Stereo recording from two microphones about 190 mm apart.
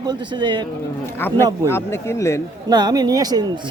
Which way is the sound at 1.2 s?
10° left (ahead or behind).